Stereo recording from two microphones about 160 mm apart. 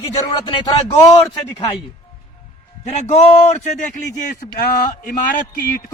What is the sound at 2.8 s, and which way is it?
Speech, 50° left (ahead or behind).